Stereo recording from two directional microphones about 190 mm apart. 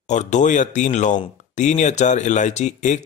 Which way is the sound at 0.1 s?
40° left (ahead or behind).